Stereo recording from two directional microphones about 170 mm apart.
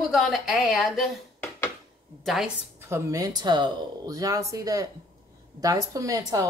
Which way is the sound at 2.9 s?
20° right (ahead or behind).